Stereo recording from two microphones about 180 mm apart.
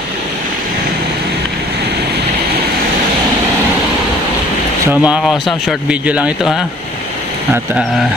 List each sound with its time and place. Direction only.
5.0 s speech: 5° right (ahead or behind)